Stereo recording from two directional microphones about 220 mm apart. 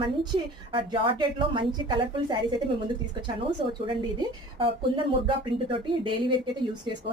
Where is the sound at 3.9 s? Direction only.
25° right (ahead or behind).